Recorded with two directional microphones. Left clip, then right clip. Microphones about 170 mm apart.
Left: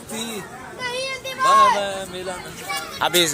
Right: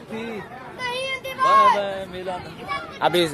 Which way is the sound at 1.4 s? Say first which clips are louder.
Left 1 dB; centre (ahead or behind).